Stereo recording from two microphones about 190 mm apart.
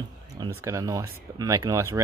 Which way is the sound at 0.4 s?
15° right (ahead or behind).